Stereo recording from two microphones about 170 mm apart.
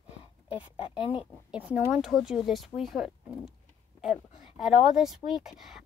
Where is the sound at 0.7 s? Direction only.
30° left (ahead or behind).